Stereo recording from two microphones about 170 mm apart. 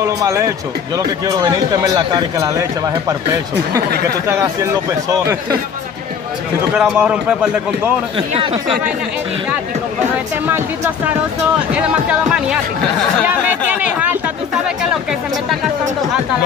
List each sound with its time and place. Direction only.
0.0 s speech: 15° right (ahead or behind)
4.3 s speech: 15° right (ahead or behind)
6.7 s a man's voice: 5° right (ahead or behind)
10.1 s speech: 10° right (ahead or behind)
13.2 s a sound: 10° right (ahead or behind)